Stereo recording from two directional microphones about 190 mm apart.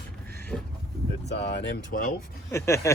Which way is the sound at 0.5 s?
5° left (ahead or behind).